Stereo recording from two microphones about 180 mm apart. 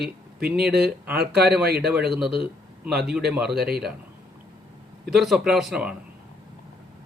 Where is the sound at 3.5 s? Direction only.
60° right (ahead or behind).